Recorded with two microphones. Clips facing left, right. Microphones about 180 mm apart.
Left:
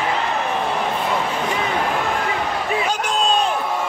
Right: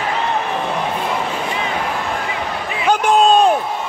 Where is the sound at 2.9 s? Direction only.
55° right (ahead or behind).